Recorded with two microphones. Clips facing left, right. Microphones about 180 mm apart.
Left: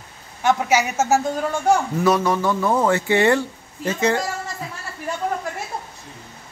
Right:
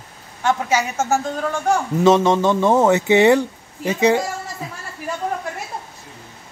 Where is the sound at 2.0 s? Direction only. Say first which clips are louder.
Right 4 dB; 25° right (ahead or behind).